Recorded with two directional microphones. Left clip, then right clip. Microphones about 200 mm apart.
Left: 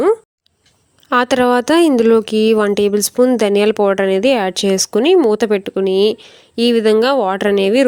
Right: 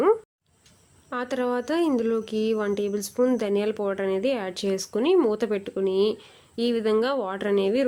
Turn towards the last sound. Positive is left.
turn(degrees=45)  # may be behind; listen again after turning